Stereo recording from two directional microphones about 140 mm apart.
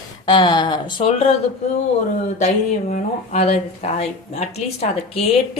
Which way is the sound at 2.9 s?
60° left (ahead or behind).